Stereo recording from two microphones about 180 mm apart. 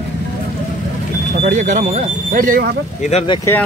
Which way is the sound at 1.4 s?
40° right (ahead or behind).